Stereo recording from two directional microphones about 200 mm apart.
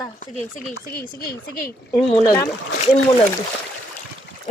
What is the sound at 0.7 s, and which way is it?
Speech, 55° left (ahead or behind).